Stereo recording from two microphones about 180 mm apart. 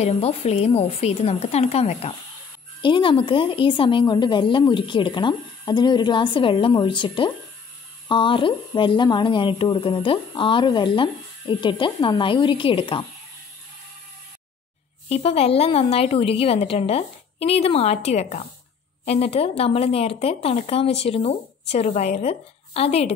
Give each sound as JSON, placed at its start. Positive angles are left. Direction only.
{"t": 0.0, "sound": "speech", "side_deg": 35}
{"t": 15.0, "sound": "speech", "side_deg": 35}